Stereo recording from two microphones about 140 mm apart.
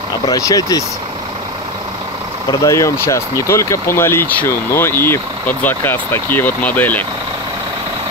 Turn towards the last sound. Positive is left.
turn(degrees=10)  # may be behind; listen again after turning